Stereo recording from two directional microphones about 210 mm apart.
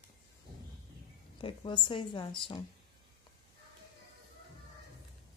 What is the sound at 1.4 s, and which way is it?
A woman's voice, 25° left (ahead or behind).